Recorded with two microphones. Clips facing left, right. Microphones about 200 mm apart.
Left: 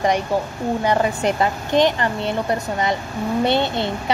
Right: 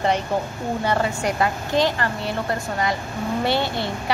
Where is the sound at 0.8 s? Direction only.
20° left (ahead or behind).